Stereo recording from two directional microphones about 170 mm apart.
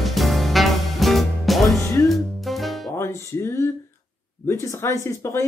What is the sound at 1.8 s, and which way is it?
Music, 15° left (ahead or behind).